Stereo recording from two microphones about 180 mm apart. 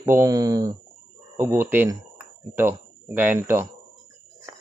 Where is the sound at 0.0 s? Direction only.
15° right (ahead or behind).